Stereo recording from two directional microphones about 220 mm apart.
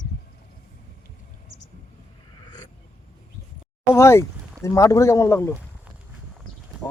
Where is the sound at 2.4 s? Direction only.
20° left (ahead or behind).